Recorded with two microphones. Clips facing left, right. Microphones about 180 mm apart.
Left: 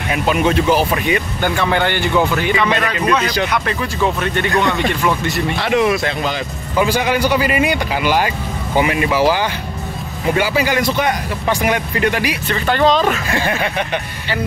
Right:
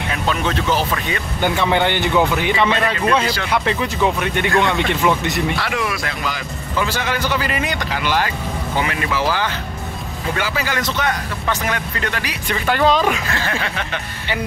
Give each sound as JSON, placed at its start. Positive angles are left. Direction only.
{"t": 0.1, "sound": "speech", "side_deg": 10}
{"t": 1.4, "sound": "speech", "side_deg": -20}
{"t": 5.6, "sound": "speech", "side_deg": 25}
{"t": 6.8, "sound": "speech", "side_deg": 15}
{"t": 12.4, "sound": "speech", "side_deg": -5}
{"t": 13.3, "sound": "speech", "side_deg": 15}